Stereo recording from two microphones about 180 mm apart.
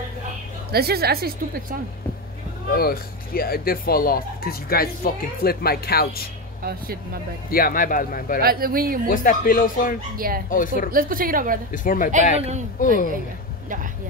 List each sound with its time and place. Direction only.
0.7 s a woman's voice: 60° right (ahead or behind)
2.7 s speech: 60° left (ahead or behind)
7.5 s speech: 50° left (ahead or behind)
8.4 s a woman's voice: 55° right (ahead or behind)
9.1 s speech: 50° left (ahead or behind)
10.1 s a woman's voice: 55° right (ahead or behind)
10.5 s speech: 50° left (ahead or behind)
10.9 s a woman's voice: 50° right (ahead or behind)
11.7 s speech: 50° left (ahead or behind)
12.4 s speech: 35° right (ahead or behind)
12.8 s speech: 45° left (ahead or behind)